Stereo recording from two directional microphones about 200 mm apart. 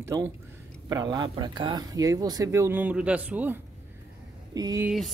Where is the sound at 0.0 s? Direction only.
15° right (ahead or behind).